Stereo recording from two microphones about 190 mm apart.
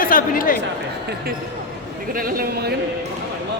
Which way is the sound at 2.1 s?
50° right (ahead or behind).